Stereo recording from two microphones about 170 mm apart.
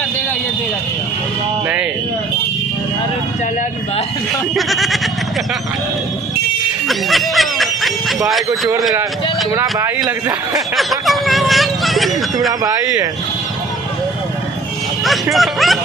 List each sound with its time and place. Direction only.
1.6 s speech: 10° right (ahead or behind)
4.5 s speech: centre (ahead or behind)
6.8 s snicker: centre (ahead or behind)
9.6 s speech: 20° right (ahead or behind)
10.8 s a sound: centre (ahead or behind)
15.0 s speech: centre (ahead or behind)